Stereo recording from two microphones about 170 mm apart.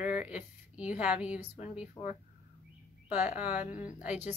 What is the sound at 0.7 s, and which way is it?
Speech, 10° right (ahead or behind).